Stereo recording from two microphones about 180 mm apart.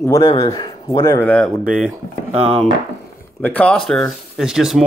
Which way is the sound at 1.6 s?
5° right (ahead or behind).